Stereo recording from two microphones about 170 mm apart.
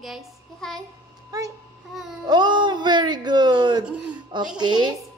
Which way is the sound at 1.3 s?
20° right (ahead or behind).